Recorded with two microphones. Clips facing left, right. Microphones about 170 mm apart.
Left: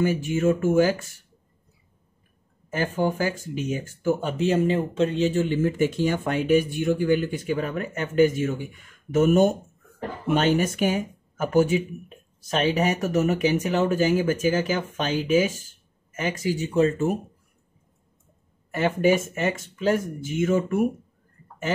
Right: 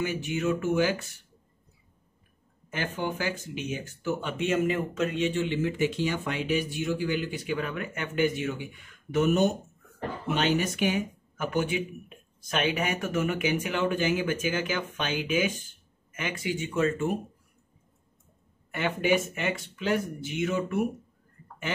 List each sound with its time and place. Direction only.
0.0 s speech: 45° left (ahead or behind)
2.7 s speech: 40° left (ahead or behind)
18.7 s speech: 40° left (ahead or behind)